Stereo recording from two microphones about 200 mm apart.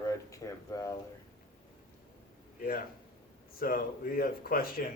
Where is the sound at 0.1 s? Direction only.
15° left (ahead or behind).